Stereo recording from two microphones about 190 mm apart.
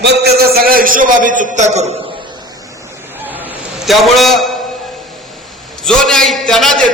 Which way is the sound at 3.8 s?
Centre (ahead or behind).